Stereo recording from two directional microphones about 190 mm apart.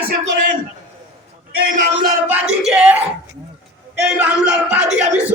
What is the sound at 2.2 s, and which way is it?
Speech, 5° right (ahead or behind).